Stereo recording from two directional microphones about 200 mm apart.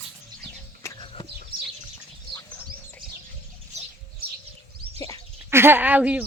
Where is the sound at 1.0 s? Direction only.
25° left (ahead or behind).